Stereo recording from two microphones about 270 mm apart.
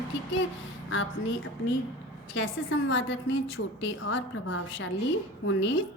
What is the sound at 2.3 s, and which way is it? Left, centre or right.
A woman's voice, left.